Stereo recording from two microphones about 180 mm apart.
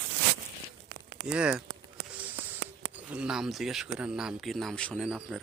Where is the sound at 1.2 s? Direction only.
5° right (ahead or behind).